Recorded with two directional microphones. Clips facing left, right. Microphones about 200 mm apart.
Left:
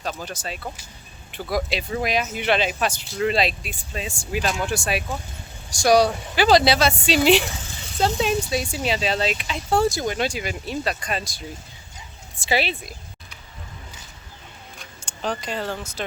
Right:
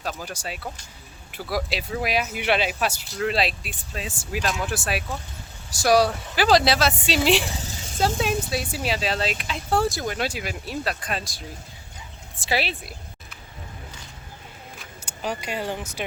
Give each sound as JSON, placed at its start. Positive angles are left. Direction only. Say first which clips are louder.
{"t": 0.0, "sound": "speech", "louder": "left 1 dB", "side_deg": -5}
{"t": 7.4, "sound": "a sound", "louder": "right 1 dB", "side_deg": -35}
{"t": 8.4, "sound": "speech", "louder": "left 3 dB", "side_deg": -5}
{"t": 14.8, "sound": "speech", "louder": "left 2 dB", "side_deg": -10}